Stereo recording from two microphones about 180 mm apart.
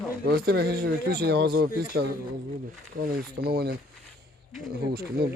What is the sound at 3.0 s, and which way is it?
Speech, 50° right (ahead or behind).